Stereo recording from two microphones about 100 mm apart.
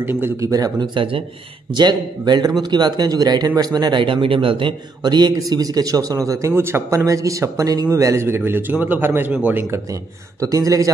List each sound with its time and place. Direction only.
0.0 s speech: 25° right (ahead or behind)
0.5 s a man's voice: 40° right (ahead or behind)
0.9 s speech: 65° right (ahead or behind)
1.7 s a man's voice: 45° right (ahead or behind); by 9.8 s 20° right (ahead or behind)
10.4 s a man's voice: 35° right (ahead or behind)